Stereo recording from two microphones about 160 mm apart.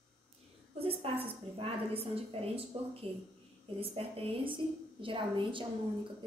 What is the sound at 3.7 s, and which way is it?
A woman's voice, 35° right (ahead or behind).